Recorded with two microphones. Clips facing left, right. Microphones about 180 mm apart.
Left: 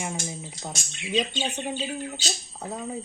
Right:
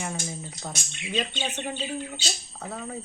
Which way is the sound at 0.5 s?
30° left (ahead or behind).